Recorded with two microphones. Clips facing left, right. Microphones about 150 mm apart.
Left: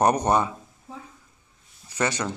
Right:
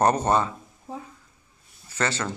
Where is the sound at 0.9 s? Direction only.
40° right (ahead or behind).